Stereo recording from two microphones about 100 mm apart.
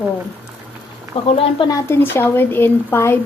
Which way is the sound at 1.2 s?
75° left (ahead or behind).